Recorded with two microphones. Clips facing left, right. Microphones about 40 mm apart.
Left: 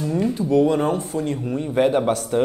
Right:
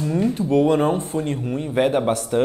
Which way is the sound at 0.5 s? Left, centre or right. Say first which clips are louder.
Even; right.